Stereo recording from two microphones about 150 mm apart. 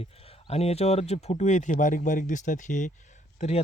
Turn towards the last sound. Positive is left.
turn(degrees=45)  # may be behind; listen again after turning